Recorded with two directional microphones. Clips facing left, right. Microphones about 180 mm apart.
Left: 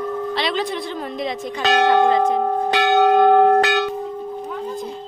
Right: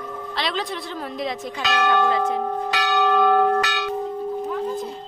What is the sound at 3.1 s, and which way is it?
Church bell, 45° left (ahead or behind).